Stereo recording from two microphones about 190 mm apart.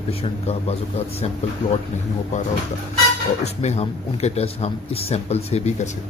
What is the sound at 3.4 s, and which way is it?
A man's voice, 35° left (ahead or behind).